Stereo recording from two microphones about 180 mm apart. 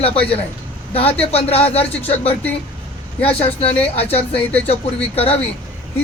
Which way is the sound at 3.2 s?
35° left (ahead or behind).